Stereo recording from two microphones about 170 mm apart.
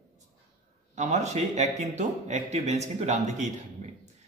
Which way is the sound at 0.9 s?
40° right (ahead or behind).